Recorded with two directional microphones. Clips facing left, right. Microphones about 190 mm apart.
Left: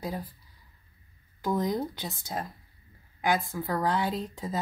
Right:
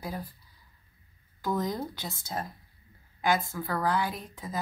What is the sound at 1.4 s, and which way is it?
Speech, 20° left (ahead or behind).